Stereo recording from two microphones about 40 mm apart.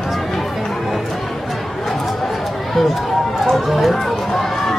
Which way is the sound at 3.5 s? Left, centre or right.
Centre.